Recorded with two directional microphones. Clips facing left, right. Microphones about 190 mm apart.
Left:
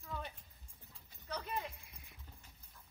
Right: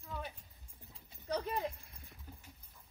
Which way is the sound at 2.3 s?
10° right (ahead or behind).